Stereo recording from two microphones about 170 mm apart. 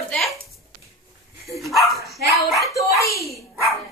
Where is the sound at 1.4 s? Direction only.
Centre (ahead or behind).